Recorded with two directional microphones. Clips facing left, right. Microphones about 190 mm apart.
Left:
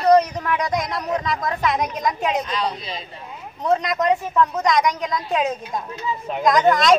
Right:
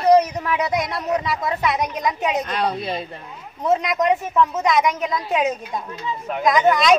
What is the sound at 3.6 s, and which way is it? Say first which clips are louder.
A woman's voice: right 1 dB; centre (ahead or behind).